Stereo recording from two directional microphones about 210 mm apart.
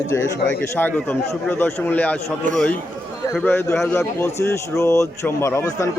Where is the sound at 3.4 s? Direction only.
10° left (ahead or behind).